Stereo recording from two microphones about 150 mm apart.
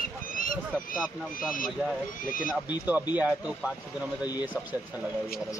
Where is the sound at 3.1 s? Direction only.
10° right (ahead or behind).